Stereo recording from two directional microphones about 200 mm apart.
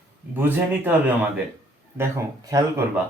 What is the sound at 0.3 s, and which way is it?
A man's voice, 10° right (ahead or behind).